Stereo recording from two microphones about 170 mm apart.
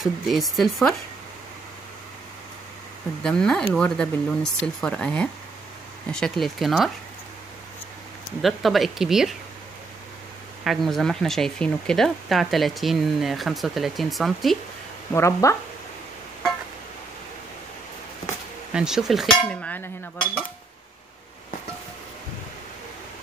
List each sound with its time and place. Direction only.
0.0 s speech: centre (ahead or behind)
3.2 s speech: 5° left (ahead or behind)
8.4 s speech: centre (ahead or behind)
10.6 s speech: centre (ahead or behind)
15.1 s speech: 15° left (ahead or behind)
18.7 s speech: 5° right (ahead or behind)